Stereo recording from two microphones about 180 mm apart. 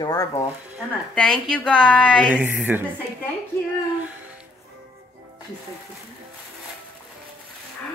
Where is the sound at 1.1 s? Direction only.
5° left (ahead or behind).